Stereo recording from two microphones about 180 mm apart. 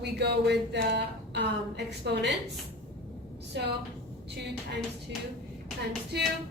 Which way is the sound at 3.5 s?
75° right (ahead or behind).